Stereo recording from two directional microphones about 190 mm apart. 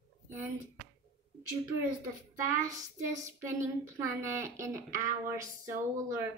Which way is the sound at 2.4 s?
15° right (ahead or behind).